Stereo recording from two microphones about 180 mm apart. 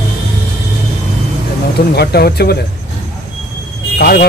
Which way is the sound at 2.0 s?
60° left (ahead or behind).